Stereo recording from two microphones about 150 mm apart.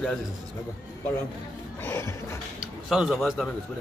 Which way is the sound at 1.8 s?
15° left (ahead or behind).